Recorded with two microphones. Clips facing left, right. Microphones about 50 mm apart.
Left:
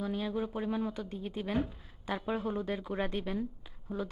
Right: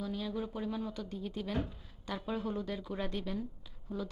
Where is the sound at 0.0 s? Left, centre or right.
Left.